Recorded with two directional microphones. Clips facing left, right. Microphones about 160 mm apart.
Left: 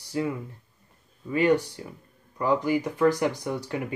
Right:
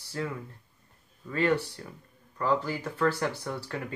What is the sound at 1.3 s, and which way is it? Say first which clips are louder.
Speech: left 5 dB; 15° left (ahead or behind).